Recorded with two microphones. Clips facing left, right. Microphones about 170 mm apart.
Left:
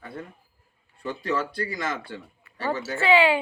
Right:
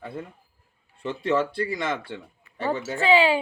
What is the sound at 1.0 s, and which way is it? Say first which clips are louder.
Speech: right 4 dB; 25° right (ahead or behind).